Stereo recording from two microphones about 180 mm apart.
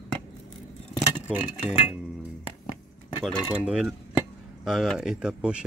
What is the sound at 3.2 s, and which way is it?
Speech, centre (ahead or behind).